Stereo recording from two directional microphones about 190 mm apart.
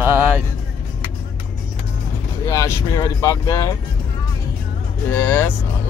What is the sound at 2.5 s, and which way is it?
Speech, 15° left (ahead or behind).